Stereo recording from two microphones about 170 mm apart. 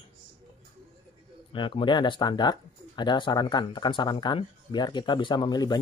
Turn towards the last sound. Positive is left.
turn(degrees=25)  # may be behind; listen again after turning